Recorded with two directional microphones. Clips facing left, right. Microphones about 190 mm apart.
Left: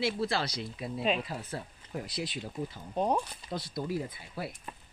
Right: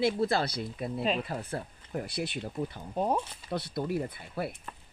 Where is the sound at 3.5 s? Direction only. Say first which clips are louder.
Right 5 dB; 60° right (ahead or behind).